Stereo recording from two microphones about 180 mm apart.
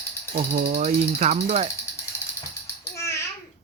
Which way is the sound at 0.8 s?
40° right (ahead or behind).